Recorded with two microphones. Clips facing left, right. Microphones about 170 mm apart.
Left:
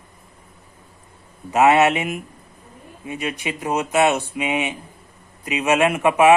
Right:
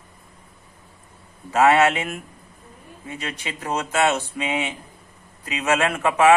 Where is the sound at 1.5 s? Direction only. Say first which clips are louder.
Left 2 dB; 20° left (ahead or behind).